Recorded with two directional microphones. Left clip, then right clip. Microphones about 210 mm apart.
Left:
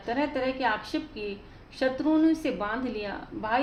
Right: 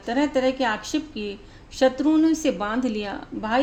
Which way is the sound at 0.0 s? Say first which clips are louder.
Right 6 dB; 50° right (ahead or behind).